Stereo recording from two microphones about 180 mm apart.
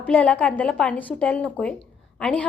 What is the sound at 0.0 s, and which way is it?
A woman's voice, 5° left (ahead or behind).